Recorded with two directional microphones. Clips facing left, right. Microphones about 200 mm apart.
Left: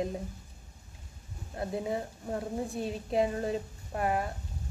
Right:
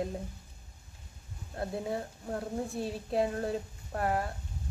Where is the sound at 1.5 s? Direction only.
10° left (ahead or behind).